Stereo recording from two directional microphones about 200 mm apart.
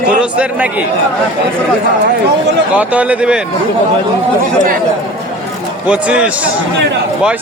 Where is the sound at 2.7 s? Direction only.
5° right (ahead or behind).